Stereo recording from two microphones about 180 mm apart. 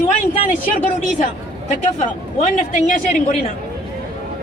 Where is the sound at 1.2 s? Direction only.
40° left (ahead or behind).